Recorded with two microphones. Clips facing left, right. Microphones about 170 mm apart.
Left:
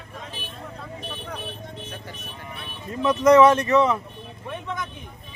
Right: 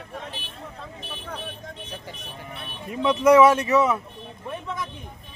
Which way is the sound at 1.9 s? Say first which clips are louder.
Even; 15° right (ahead or behind).